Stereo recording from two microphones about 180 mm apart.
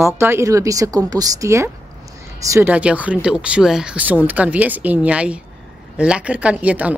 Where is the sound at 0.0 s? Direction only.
15° right (ahead or behind).